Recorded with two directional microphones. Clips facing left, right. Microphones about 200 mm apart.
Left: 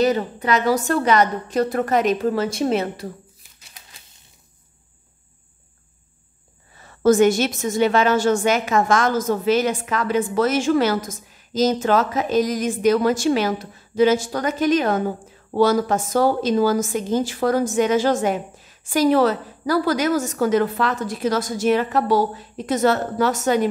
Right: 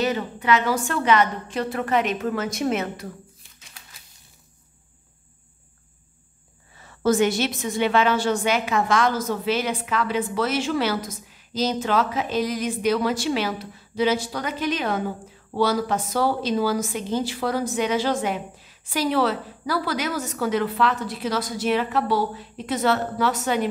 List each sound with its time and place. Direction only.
0.0 s a woman's voice: 40° left (ahead or behind)
6.8 s a woman's voice: 45° left (ahead or behind)